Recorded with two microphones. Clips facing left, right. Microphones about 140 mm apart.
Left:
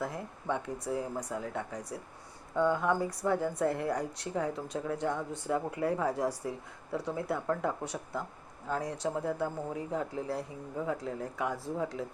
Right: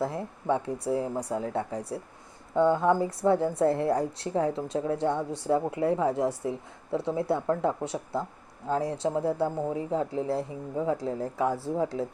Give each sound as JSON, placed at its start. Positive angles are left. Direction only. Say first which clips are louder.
{"t": 0.0, "sound": "speech", "louder": "right 6 dB", "side_deg": -30}